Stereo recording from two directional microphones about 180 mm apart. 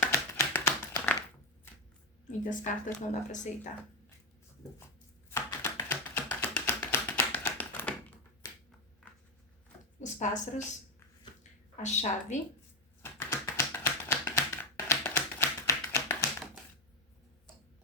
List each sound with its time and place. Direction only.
0.0 s tap: 10° left (ahead or behind)
2.4 s speech: 45° left (ahead or behind)
5.3 s chopping: 20° left (ahead or behind)
5.9 s tap: 10° left (ahead or behind)
8.4 s finger snapping: 20° left (ahead or behind)
10.0 s a woman's voice: 40° left (ahead or behind)
11.8 s a woman's voice: 40° left (ahead or behind)
13.0 s typewriter: 15° left (ahead or behind)